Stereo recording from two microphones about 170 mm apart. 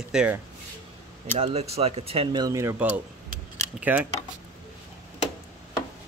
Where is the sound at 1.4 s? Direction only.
40° right (ahead or behind).